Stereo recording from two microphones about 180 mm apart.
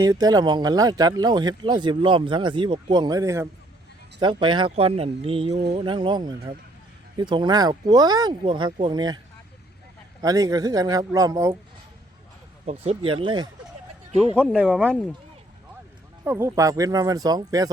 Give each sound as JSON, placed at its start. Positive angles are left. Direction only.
{"t": 0.0, "sound": "speech", "side_deg": -20}
{"t": 10.2, "sound": "speech", "side_deg": -20}
{"t": 12.6, "sound": "speech", "side_deg": -35}
{"t": 14.3, "sound": "speech", "side_deg": -10}
{"t": 16.2, "sound": "speech", "side_deg": -10}